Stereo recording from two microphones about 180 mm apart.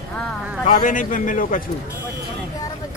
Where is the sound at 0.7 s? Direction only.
45° left (ahead or behind).